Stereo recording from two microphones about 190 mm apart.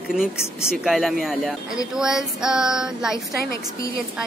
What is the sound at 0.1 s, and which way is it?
Speech, 5° right (ahead or behind).